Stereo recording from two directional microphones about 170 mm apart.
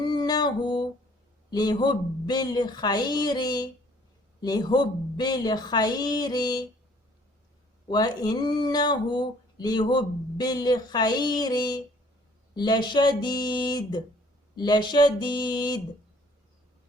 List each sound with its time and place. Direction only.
0.0 s music: 25° left (ahead or behind)
1.5 s speech: 25° left (ahead or behind)
7.9 s speech: 25° left (ahead or behind)